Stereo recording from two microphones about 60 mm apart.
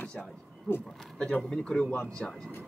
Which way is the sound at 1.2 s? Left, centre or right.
Centre.